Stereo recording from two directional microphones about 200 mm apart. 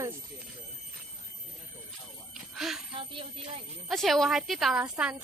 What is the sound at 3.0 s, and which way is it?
Music, 25° right (ahead or behind).